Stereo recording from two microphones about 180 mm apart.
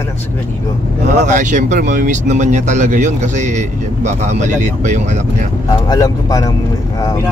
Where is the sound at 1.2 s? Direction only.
45° right (ahead or behind).